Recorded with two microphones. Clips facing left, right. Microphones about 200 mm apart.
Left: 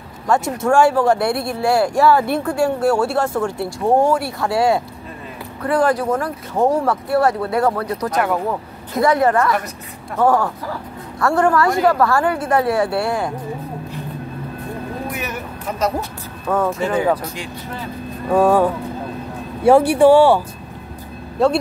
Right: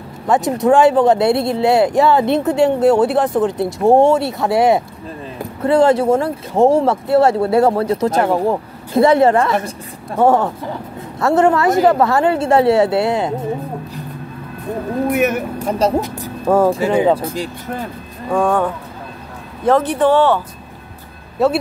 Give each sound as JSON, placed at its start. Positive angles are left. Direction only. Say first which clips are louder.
{"t": 0.3, "sound": "speech", "louder": "right 4 dB", "side_deg": -20}
{"t": 15.0, "sound": "speech", "louder": "right 10 dB", "side_deg": -55}
{"t": 16.4, "sound": "speech", "louder": "right 5 dB", "side_deg": -30}
{"t": 18.3, "sound": "speech", "louder": "left 2 dB", "side_deg": 5}
{"t": 21.4, "sound": "speech", "louder": "right 1 dB", "side_deg": -5}